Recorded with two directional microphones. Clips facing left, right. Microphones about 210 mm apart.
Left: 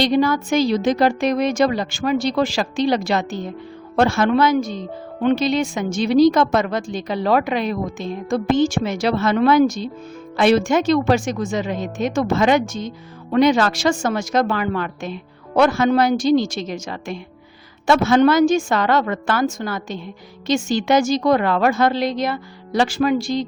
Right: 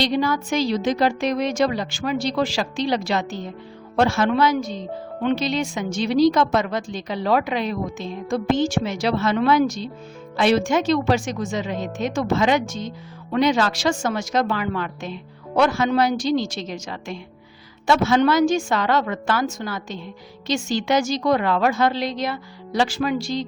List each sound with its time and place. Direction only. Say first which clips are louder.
0.0 s a woman's voice: left 4 dB; 50° left (ahead or behind)